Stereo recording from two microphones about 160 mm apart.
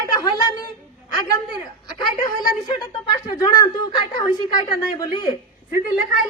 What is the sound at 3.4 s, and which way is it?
A woman's voice, 25° left (ahead or behind).